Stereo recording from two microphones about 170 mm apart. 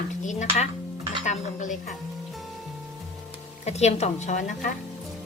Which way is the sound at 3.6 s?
40° left (ahead or behind).